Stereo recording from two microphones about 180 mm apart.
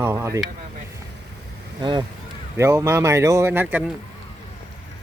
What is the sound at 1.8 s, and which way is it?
Speech, 25° right (ahead or behind).